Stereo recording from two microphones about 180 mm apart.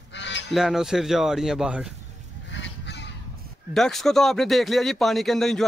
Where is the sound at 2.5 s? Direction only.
80° left.